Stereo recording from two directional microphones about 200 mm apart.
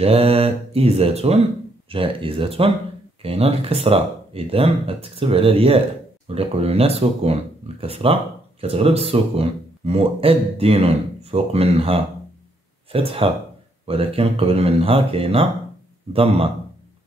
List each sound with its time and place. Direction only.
0.0 s speech: 30° right (ahead or behind)